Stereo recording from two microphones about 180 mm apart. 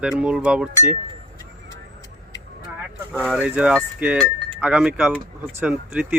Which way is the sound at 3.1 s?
5° right (ahead or behind).